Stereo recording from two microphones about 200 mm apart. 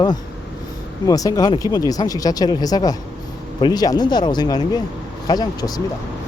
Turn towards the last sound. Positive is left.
turn(degrees=20)  # may be behind; listen again after turning